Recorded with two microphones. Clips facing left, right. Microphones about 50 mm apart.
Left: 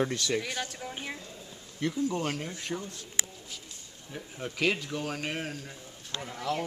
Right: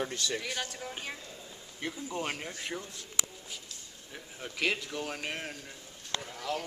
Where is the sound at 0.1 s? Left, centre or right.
Left.